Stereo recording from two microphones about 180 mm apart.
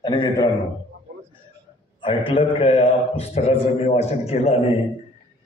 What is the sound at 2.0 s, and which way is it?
A man's voice, 30° left (ahead or behind).